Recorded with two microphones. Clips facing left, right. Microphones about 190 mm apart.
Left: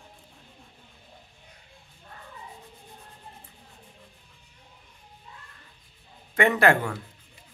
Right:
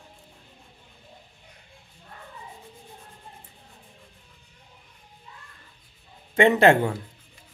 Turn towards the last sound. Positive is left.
turn(degrees=-25)  # may be behind; listen again after turning